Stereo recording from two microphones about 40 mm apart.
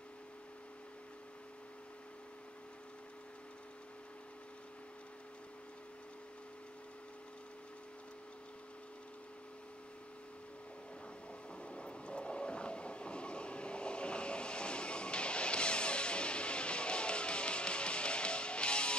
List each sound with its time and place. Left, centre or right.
11.6 s train: left